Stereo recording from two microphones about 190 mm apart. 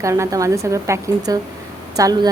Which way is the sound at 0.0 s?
15° right (ahead or behind).